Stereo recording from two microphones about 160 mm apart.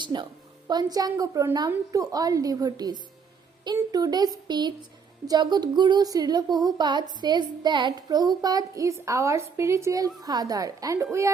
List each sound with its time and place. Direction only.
0.0 s speech: 30° right (ahead or behind)